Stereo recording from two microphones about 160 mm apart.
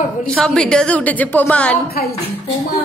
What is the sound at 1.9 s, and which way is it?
Speech, 75° left (ahead or behind).